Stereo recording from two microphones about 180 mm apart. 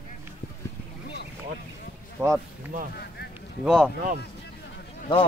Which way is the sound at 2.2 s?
15° right (ahead or behind).